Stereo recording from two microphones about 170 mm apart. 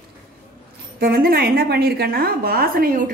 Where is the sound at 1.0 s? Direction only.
65° right (ahead or behind).